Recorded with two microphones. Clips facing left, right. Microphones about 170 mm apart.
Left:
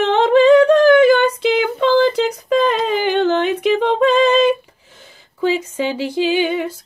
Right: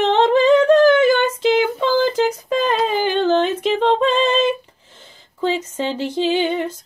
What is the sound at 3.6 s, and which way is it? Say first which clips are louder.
Female singing: left 2 dB; 10° left (ahead or behind).